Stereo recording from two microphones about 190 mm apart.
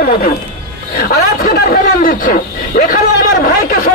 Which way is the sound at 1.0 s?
50° left (ahead or behind).